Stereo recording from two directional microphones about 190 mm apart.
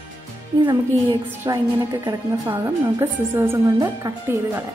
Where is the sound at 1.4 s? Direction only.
20° right (ahead or behind).